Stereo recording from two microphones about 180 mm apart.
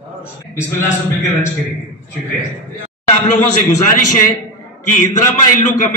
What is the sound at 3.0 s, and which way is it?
A man's voice, 40° left (ahead or behind).